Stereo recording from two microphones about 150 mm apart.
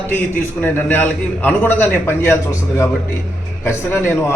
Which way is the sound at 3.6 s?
15° left (ahead or behind).